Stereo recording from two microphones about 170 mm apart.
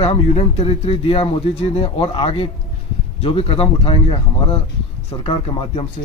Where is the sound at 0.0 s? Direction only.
35° left (ahead or behind).